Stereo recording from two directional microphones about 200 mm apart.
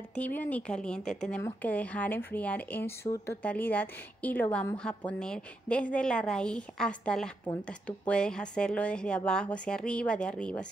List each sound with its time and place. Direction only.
0.1 s a woman's voice: 10° left (ahead or behind)